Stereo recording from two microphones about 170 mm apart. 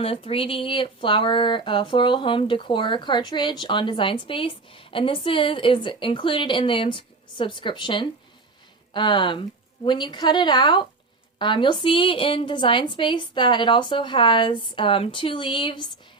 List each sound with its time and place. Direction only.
0.0 s speech: 35° left (ahead or behind)